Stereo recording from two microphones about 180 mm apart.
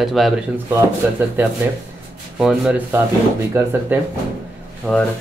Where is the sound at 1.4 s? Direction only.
10° right (ahead or behind).